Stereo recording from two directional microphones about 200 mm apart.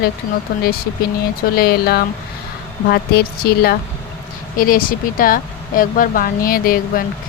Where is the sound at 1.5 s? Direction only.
50° left (ahead or behind).